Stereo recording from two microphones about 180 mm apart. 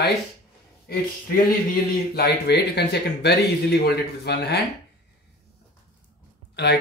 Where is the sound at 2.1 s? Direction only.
65° left (ahead or behind).